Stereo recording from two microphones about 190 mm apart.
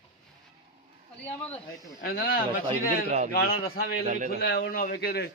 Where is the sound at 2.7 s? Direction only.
35° right (ahead or behind).